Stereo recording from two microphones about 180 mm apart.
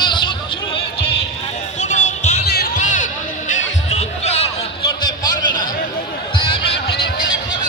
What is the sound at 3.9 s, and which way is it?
Basketball bounce, 35° left (ahead or behind).